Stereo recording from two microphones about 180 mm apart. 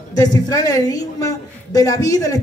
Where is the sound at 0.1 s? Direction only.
20° left (ahead or behind).